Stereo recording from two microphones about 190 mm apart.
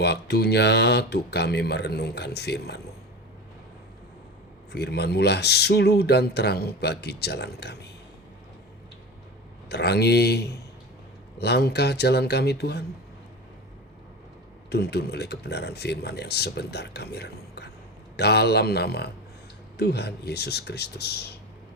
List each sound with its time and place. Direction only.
0.0 s speech: 60° left (ahead or behind)
4.7 s speech: 60° left (ahead or behind)
9.6 s speech: 60° left (ahead or behind)
14.7 s speech: 60° left (ahead or behind)